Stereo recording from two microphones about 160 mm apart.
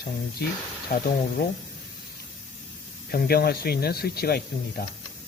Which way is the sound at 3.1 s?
70° left (ahead or behind).